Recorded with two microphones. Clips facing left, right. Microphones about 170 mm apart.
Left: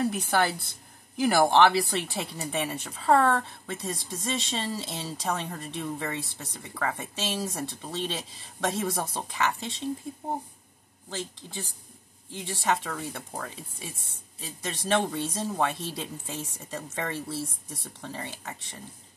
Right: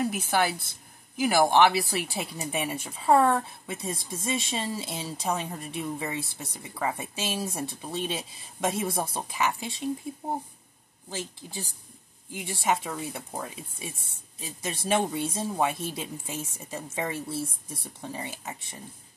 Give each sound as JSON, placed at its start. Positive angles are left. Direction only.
{"t": 0.0, "sound": "speech", "side_deg": 0}
{"t": 11.1, "sound": "speech", "side_deg": -10}